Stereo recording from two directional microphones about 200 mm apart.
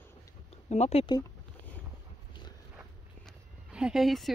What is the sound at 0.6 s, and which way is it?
Speech, 30° left (ahead or behind).